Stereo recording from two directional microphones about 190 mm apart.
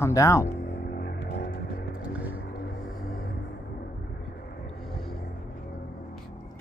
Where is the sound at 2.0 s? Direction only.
5° right (ahead or behind).